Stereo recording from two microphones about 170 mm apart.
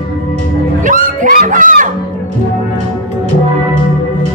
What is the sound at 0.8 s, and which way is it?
Music, 55° right (ahead or behind).